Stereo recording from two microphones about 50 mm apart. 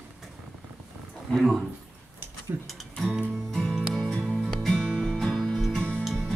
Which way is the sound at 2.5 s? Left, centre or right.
Right.